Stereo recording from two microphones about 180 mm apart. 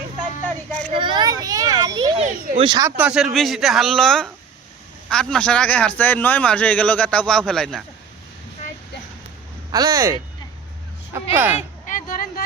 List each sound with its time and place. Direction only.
0.4 s a sound: 5° left (ahead or behind)
0.9 s children playing: 25° right (ahead or behind)
2.6 s speech: 25° right (ahead or behind)
3.0 s a man's voice: 5° right (ahead or behind)
9.7 s speech: 20° right (ahead or behind)
11.9 s a sound: 50° left (ahead or behind)